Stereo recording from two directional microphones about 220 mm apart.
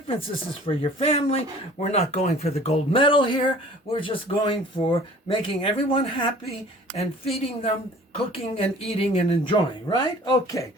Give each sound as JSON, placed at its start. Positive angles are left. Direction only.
{"t": 0.6, "sound": "speech", "side_deg": 25}